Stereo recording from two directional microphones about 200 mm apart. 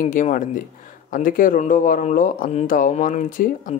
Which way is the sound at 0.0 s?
40° left (ahead or behind).